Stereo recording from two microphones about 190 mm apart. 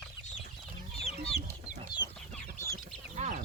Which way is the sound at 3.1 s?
35° right (ahead or behind).